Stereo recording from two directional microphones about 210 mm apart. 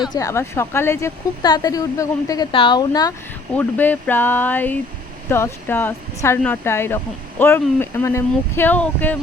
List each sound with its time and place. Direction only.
0.2 s speech: 15° left (ahead or behind)
3.5 s speech: 10° left (ahead or behind)